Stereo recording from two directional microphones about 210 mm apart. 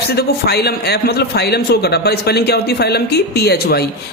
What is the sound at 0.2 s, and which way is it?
A man's voice, 50° left (ahead or behind).